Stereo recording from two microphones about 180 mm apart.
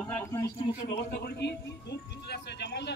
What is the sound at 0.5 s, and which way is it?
Speech, 30° left (ahead or behind).